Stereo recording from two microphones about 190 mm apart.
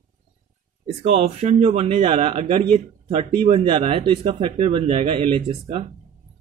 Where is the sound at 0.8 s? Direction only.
35° right (ahead or behind).